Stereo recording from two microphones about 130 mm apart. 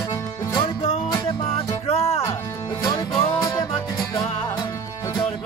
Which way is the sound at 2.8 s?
30° left (ahead or behind).